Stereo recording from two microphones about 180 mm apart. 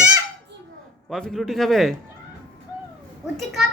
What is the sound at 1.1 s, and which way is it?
Speech, centre (ahead or behind).